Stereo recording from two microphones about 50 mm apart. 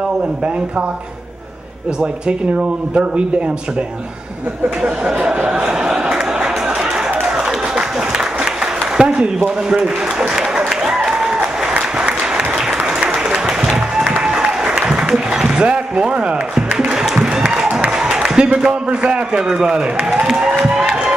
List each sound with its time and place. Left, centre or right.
2.0 s speech: centre
4.8 s a sound: centre
10.7 s applause: centre
13.7 s music: centre
15.6 s a sound: right
18.1 s a man's voice: centre
20.2 s crowd: centre